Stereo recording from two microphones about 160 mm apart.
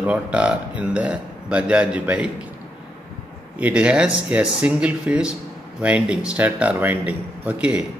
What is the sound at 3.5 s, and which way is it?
Speech, 10° right (ahead or behind).